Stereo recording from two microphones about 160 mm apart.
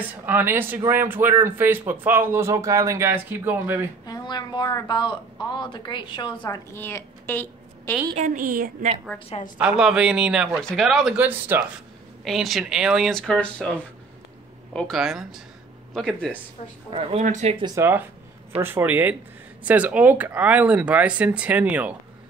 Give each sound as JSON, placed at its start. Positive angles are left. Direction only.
{"t": 0.3, "sound": "speech", "side_deg": -15}
{"t": 4.0, "sound": "speech", "side_deg": 25}
{"t": 6.7, "sound": "a woman's voice", "side_deg": 15}
{"t": 8.2, "sound": "a woman's voice", "side_deg": -65}
{"t": 9.6, "sound": "speech", "side_deg": -5}
{"t": 12.3, "sound": "speech", "side_deg": 0}
{"t": 14.7, "sound": "speech", "side_deg": 5}
{"t": 16.9, "sound": "speech", "side_deg": -35}
{"t": 17.2, "sound": "speech", "side_deg": -50}
{"t": 17.7, "sound": "speech", "side_deg": -15}